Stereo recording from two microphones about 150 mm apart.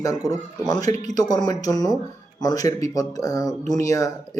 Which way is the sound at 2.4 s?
25° left (ahead or behind).